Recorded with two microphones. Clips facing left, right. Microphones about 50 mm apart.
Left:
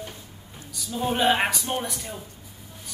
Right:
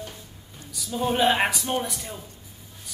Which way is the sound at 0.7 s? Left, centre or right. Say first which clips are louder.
Right 1 dB; centre.